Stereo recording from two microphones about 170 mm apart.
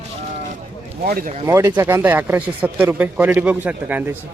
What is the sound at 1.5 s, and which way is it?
Speech, 20° right (ahead or behind).